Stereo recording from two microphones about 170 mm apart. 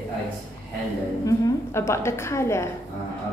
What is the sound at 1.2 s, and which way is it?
A woman's voice, 15° left (ahead or behind).